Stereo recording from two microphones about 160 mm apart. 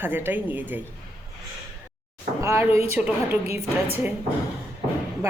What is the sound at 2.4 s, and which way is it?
Speech, 15° right (ahead or behind).